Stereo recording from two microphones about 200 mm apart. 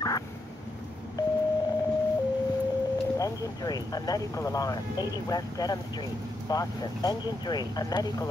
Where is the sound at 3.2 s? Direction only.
20° left (ahead or behind).